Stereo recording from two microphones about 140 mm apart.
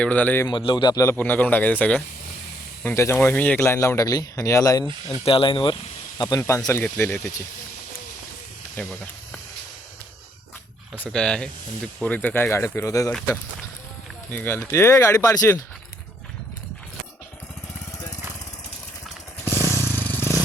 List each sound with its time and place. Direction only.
0.0 s speech: 10° left (ahead or behind)
0.4 s speech: 35° left (ahead or behind)
1.0 s speech: 15° left (ahead or behind)
5.2 s speech: 40° left (ahead or behind)
6.1 s speech: 25° left (ahead or behind)
8.7 s snake: 5° left (ahead or behind)
10.9 s speech: 10° left (ahead or behind)
14.3 s speech: 15° left (ahead or behind)
19.5 s motorcycle: 20° right (ahead or behind)
20.0 s vehicle: 15° left (ahead or behind)